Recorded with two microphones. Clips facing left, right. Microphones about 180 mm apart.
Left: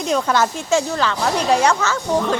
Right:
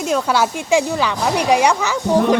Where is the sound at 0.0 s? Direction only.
10° right (ahead or behind).